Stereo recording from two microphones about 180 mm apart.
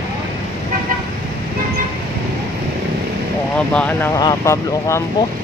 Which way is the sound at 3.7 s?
10° left (ahead or behind).